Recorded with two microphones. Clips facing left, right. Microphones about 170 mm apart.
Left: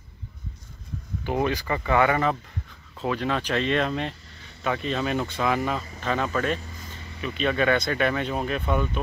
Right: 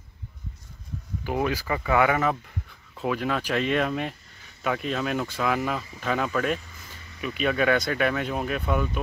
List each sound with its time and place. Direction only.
1.2 s speech: 5° right (ahead or behind)